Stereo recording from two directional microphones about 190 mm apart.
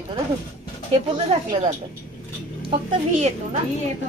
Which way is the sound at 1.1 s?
30° right (ahead or behind).